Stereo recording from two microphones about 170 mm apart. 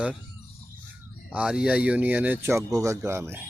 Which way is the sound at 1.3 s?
5° right (ahead or behind).